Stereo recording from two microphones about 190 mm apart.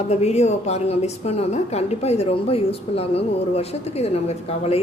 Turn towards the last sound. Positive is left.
turn(degrees=35)  # may be behind; listen again after turning